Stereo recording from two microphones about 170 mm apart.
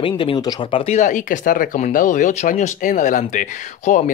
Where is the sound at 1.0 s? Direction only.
50° left (ahead or behind).